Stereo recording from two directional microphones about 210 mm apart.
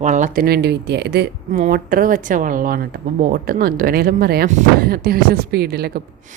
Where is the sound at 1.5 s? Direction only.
35° right (ahead or behind).